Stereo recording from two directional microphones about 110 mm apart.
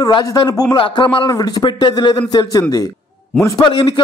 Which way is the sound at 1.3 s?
35° left (ahead or behind).